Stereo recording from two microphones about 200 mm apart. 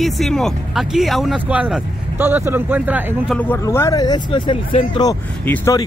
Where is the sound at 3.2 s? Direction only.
10° left (ahead or behind); by 5.1 s 25° left (ahead or behind).